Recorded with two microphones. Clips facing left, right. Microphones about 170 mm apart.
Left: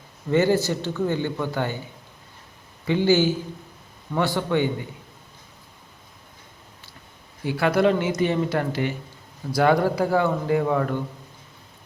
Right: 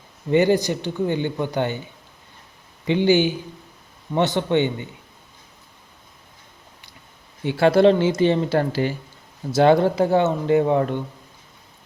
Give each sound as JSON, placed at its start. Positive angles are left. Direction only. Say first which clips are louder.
{"t": 0.3, "sound": "a man's voice", "louder": "right 2 dB", "side_deg": -15}
{"t": 2.8, "sound": "speech", "louder": "right 2 dB", "side_deg": -20}
{"t": 7.4, "sound": "speech", "louder": "right 5 dB", "side_deg": -30}